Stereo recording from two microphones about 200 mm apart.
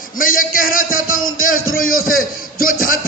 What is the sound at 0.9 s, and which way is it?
Music, 90° left.